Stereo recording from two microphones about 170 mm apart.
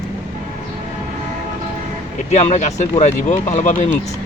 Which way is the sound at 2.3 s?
45° left (ahead or behind).